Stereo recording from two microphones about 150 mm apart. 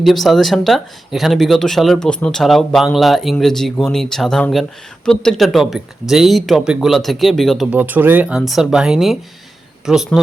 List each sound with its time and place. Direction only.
0.0 s speech: centre (ahead or behind)
7.7 s speech: 10° right (ahead or behind)